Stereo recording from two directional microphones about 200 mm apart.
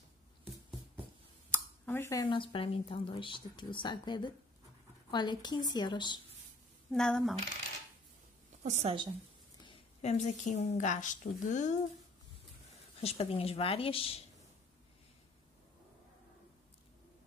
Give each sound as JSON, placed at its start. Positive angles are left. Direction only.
{"t": 1.5, "sound": "speech", "side_deg": 10}
{"t": 6.9, "sound": "speech", "side_deg": 5}
{"t": 8.6, "sound": "a woman's voice", "side_deg": -35}
{"t": 9.7, "sound": "a woman's voice", "side_deg": 35}
{"t": 12.7, "sound": "speech", "side_deg": 30}